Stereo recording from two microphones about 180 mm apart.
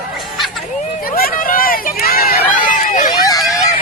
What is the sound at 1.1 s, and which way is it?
Run, 50° left (ahead or behind).